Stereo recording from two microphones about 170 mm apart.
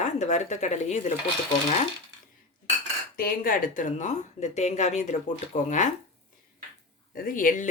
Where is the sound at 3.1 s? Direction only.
60° left (ahead or behind).